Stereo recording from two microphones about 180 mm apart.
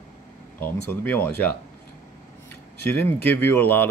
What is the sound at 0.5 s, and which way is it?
Speech, 10° left (ahead or behind).